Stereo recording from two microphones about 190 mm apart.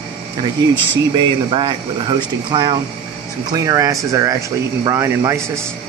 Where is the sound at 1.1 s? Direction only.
25° right (ahead or behind).